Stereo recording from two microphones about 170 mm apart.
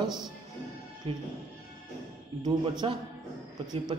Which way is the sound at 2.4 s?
25° right (ahead or behind).